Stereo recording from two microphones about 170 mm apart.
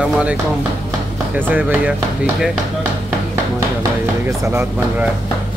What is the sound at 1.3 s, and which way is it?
Speech, 10° right (ahead or behind).